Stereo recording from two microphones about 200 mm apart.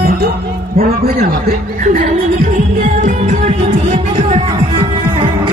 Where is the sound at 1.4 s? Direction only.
35° right (ahead or behind).